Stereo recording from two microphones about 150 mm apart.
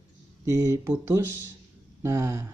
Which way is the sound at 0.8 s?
20° right (ahead or behind).